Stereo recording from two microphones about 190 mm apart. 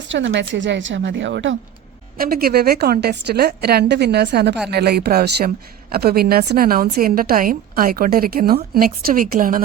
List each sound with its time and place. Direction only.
0.1 s a woman's voice: 70° right (ahead or behind)
2.1 s a woman's voice: 50° right (ahead or behind)